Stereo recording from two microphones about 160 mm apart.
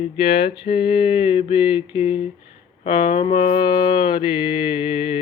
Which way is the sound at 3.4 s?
55° left (ahead or behind).